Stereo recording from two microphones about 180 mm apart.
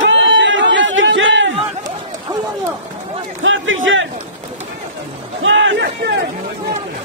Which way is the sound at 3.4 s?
90° right.